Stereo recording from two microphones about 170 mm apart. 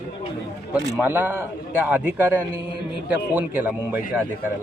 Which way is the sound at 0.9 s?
10° right (ahead or behind).